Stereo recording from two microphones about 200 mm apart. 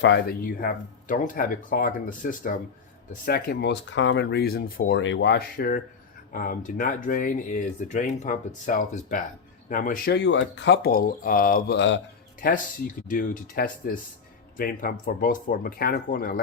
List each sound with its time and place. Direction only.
0.0 s speech: 65° left (ahead or behind)
0.4 s speech: 45° left (ahead or behind)
10.2 s speech: 60° left (ahead or behind); by 16.4 s 45° left (ahead or behind)